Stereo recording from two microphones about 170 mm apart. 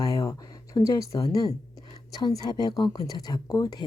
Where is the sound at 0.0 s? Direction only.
20° left (ahead or behind).